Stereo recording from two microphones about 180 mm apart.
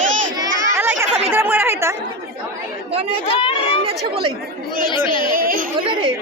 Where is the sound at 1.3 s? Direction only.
10° right (ahead or behind).